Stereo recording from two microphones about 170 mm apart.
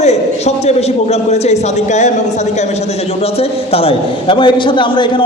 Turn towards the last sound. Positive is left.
turn(degrees=30)  # may be behind; listen again after turning